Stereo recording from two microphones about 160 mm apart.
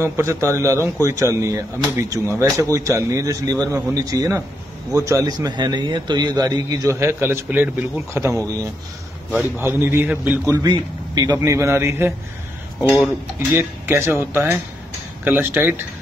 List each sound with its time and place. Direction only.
0.0 s a man's voice: 15° right (ahead or behind)
13.6 s a man's voice: 15° right (ahead or behind)